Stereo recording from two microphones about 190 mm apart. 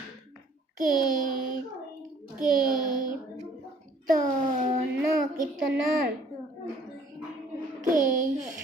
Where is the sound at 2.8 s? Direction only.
45° right (ahead or behind).